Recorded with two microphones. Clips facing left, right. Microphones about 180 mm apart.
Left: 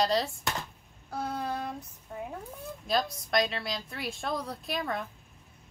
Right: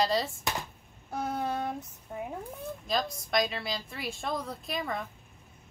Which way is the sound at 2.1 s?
15° right (ahead or behind).